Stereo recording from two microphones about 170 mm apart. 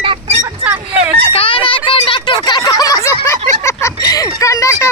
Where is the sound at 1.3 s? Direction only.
30° left (ahead or behind).